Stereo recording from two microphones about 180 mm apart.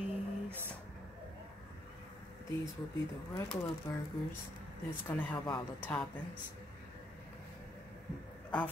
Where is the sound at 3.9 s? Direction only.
20° left (ahead or behind).